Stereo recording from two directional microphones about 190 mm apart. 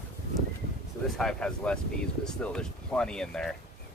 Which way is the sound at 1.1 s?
5° left (ahead or behind).